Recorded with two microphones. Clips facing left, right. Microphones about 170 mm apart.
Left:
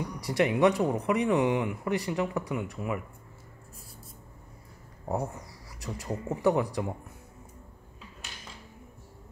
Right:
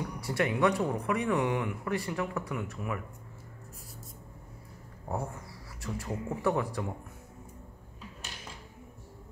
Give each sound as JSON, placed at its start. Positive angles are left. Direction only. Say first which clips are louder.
{"t": 0.2, "sound": "speech", "louder": "left 4 dB", "side_deg": 20}
{"t": 5.0, "sound": "a sound", "louder": "left 4 dB", "side_deg": 20}
{"t": 6.0, "sound": "speech", "louder": "left 4 dB", "side_deg": 0}
{"t": 6.4, "sound": "speech", "louder": "left 5 dB", "side_deg": 15}